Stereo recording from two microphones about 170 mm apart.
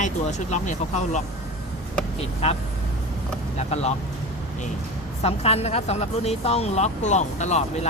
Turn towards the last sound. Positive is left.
turn(degrees=40)  # may be behind; listen again after turning